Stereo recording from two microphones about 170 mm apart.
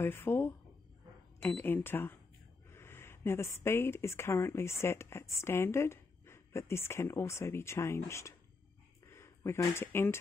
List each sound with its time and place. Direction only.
0.0 s speech: 15° left (ahead or behind)
9.0 s a sound: 15° left (ahead or behind)
9.8 s speech: 15° left (ahead or behind)